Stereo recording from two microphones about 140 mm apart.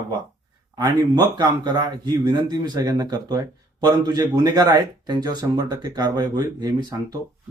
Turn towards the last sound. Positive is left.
turn(degrees=-25)  # may be behind; listen again after turning